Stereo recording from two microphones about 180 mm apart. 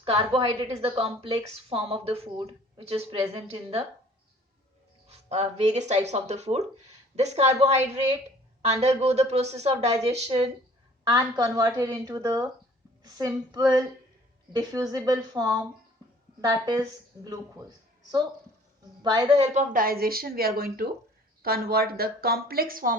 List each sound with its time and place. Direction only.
0.2 s a woman's voice: 30° right (ahead or behind)
5.0 s a woman's voice: 35° right (ahead or behind)
11.0 s a woman's voice: 25° right (ahead or behind)
19.5 s a woman's voice: 55° right (ahead or behind)